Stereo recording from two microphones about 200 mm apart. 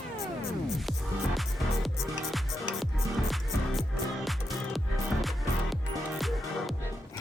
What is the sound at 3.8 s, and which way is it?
Music, centre (ahead or behind).